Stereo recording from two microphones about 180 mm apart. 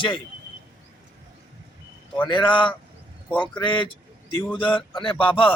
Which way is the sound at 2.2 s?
25° left (ahead or behind).